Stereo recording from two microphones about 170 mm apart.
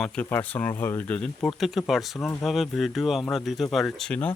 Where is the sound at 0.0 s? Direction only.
10° left (ahead or behind).